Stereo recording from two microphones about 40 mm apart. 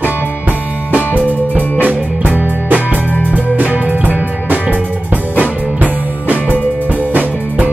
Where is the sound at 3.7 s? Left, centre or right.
Right.